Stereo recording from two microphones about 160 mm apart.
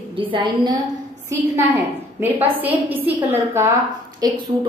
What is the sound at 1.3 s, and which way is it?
A woman's voice, 15° right (ahead or behind).